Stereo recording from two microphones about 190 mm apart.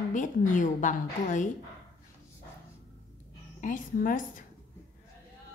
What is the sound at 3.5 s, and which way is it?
Speech, 45° left (ahead or behind).